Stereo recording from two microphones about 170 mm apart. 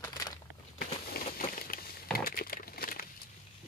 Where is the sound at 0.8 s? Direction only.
60° left (ahead or behind).